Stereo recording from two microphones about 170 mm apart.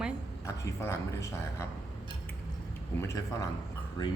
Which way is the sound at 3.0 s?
20° left (ahead or behind).